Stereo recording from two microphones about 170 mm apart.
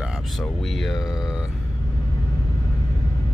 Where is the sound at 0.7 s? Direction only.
Centre (ahead or behind).